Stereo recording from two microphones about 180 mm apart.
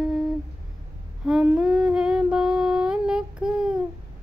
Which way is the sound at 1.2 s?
5° right (ahead or behind).